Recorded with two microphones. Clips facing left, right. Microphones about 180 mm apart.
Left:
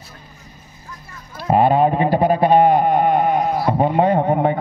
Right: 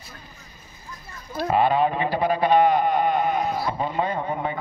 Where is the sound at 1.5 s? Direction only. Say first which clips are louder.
Left 6 dB; 50° left (ahead or behind).